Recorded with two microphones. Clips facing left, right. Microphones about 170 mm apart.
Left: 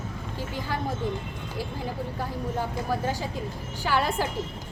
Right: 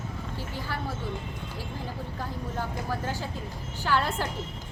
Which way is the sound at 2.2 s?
10° left (ahead or behind).